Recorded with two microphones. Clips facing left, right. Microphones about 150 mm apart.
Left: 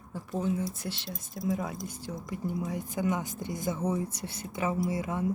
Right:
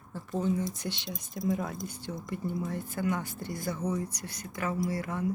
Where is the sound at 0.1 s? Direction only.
10° left (ahead or behind).